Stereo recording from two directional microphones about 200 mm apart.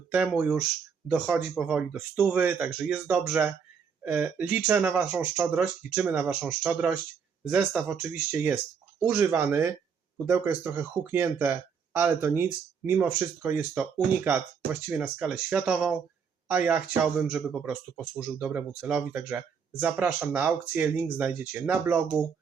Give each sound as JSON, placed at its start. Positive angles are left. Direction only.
{"t": 0.1, "sound": "speech", "side_deg": -5}